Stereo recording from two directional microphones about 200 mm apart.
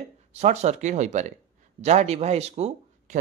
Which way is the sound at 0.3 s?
35° right (ahead or behind).